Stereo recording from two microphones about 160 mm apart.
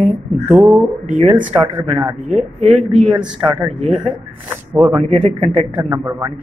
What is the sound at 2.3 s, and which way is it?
Speech, 50° right (ahead or behind).